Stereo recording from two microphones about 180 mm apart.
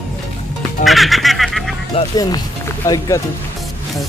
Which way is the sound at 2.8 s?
15° left (ahead or behind).